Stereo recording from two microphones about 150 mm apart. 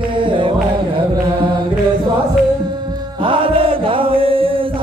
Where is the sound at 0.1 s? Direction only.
35° right (ahead or behind).